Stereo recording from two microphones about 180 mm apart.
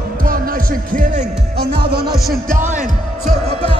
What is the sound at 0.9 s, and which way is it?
Music, 55° right (ahead or behind).